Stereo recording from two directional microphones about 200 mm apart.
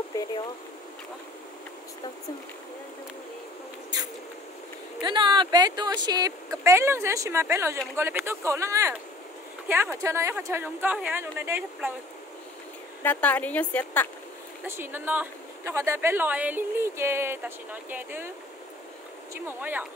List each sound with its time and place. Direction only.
5.0 s speech: 25° right (ahead or behind)
13.0 s speech: 10° left (ahead or behind)
14.7 s speech: 10° right (ahead or behind)
19.4 s speech: 10° right (ahead or behind)